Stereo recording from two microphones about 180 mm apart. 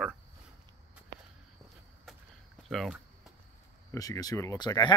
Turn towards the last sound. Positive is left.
turn(degrees=25)  # may be behind; listen again after turning